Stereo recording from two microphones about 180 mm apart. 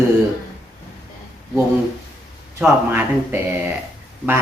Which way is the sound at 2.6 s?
10° right (ahead or behind).